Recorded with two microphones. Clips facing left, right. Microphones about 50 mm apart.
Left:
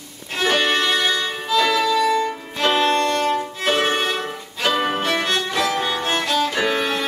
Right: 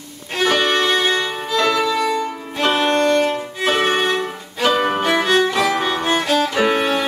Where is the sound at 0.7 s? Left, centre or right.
Centre.